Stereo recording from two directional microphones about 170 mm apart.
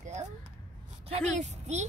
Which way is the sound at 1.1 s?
40° right (ahead or behind).